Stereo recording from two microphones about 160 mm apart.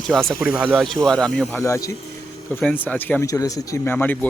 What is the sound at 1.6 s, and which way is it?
Speech, 20° left (ahead or behind).